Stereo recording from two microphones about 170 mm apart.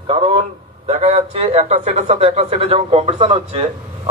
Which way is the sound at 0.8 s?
40° right (ahead or behind).